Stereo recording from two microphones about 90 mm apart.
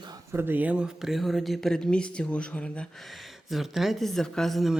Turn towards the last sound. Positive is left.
turn(degrees=0)  # may be behind; listen again after turning